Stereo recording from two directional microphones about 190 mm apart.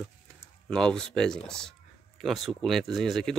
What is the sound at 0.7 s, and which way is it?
A man's voice, 5° left (ahead or behind).